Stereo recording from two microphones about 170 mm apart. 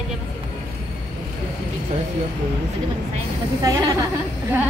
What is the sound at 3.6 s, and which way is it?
Speech, 20° right (ahead or behind).